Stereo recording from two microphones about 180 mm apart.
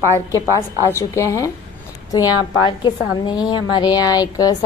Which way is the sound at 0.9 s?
15° left (ahead or behind).